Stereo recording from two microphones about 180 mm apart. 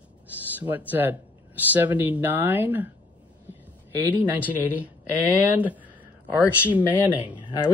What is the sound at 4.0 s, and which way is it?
Speech, 10° right (ahead or behind).